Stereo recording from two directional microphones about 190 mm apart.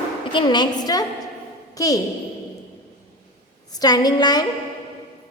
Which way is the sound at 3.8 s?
20° left (ahead or behind).